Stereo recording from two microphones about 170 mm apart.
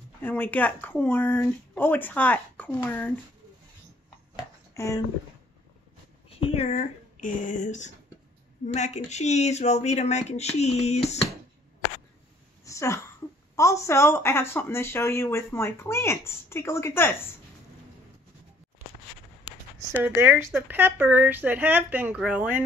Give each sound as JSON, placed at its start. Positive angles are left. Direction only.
{"t": 0.2, "sound": "a woman's voice", "side_deg": 10}
{"t": 4.4, "sound": "a sound", "side_deg": 20}
{"t": 6.4, "sound": "speech", "side_deg": 35}
{"t": 12.6, "sound": "a sound", "side_deg": 20}
{"t": 13.6, "sound": "a woman's voice", "side_deg": 20}
{"t": 20.0, "sound": "speech", "side_deg": -10}